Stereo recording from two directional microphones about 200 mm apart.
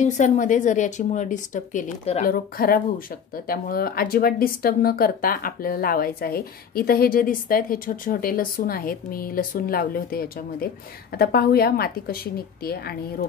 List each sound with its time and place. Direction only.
0.0 s a woman's voice: 40° left (ahead or behind)
2.3 s speech: 45° left (ahead or behind)